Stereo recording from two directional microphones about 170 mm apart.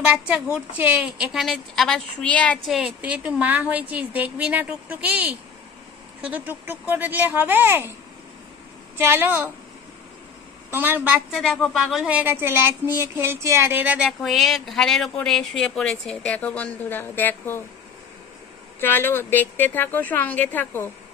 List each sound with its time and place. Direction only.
0.0 s a woman's voice: 5° right (ahead or behind)
8.9 s a woman's voice: 15° right (ahead or behind)
10.7 s a woman's voice: 10° right (ahead or behind)
11.3 s speech: centre (ahead or behind)
18.8 s a woman's voice: 10° left (ahead or behind)